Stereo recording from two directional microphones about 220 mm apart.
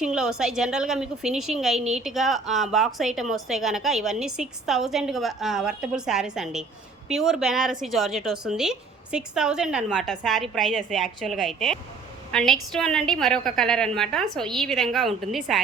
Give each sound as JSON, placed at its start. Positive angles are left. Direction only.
{"t": 0.0, "sound": "a woman's voice", "side_deg": -5}